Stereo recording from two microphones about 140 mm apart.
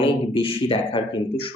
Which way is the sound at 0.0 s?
40° left (ahead or behind).